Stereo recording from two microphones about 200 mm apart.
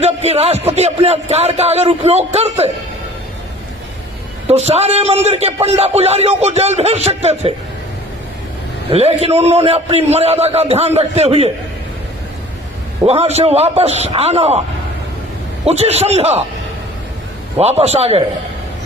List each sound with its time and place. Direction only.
0.0 s a man's voice: 30° right (ahead or behind)
4.4 s a man's voice: 30° right (ahead or behind)
8.9 s a man's voice: 30° right (ahead or behind)
13.1 s a man's voice: 30° right (ahead or behind)
15.6 s a man's voice: 30° right (ahead or behind)
17.6 s a man's voice: 30° right (ahead or behind)